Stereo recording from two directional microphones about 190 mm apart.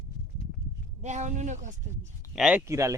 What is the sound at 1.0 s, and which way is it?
Speech, 40° right (ahead or behind).